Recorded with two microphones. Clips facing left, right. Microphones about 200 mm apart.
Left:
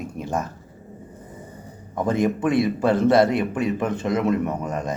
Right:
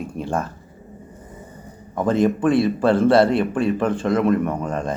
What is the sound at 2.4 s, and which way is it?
Speech, 20° left (ahead or behind).